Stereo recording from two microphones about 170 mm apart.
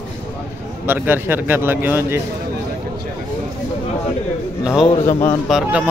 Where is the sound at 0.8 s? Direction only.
10° right (ahead or behind).